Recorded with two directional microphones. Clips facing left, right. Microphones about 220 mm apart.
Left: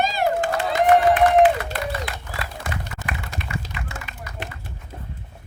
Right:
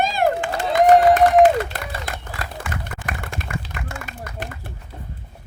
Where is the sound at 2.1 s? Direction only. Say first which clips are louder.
Right 1 dB; 50° right (ahead or behind).